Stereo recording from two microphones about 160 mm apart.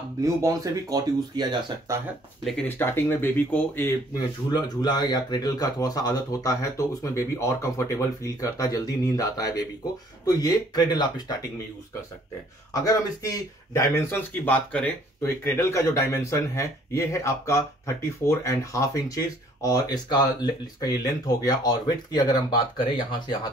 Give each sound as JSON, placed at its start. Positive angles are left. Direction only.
{"t": 0.2, "sound": "speech", "side_deg": -20}
{"t": 2.8, "sound": "speech", "side_deg": 15}
{"t": 4.5, "sound": "speech", "side_deg": 25}
{"t": 12.8, "sound": "speech", "side_deg": 20}